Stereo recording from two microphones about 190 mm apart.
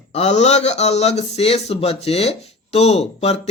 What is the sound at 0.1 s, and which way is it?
Speech, 35° left (ahead or behind).